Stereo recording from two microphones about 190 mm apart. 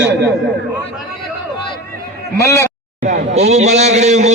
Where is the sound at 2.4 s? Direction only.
15° left (ahead or behind).